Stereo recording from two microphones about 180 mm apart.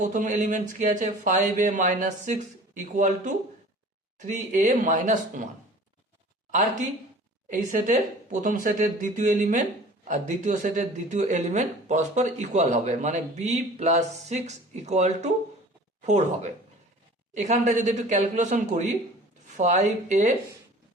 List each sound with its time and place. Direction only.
0.0 s speech: 45° right (ahead or behind)
4.4 s speech: 45° right (ahead or behind)
6.5 s speech: 45° right (ahead or behind)